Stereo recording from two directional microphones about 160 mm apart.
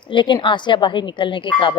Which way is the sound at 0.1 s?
30° left (ahead or behind).